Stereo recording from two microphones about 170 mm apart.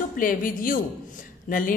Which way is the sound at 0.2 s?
55° left (ahead or behind).